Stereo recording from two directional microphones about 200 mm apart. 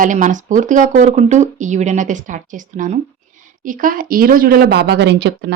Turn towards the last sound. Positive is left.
turn(degrees=-60)  # may be behind; listen again after turning